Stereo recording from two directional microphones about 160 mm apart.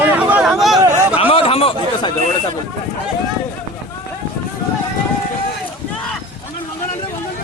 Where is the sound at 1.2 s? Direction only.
35° left (ahead or behind).